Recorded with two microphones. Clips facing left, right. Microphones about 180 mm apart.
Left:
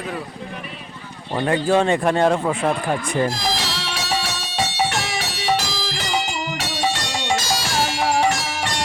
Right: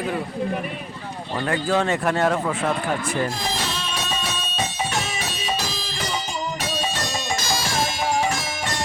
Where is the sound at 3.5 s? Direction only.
80° left.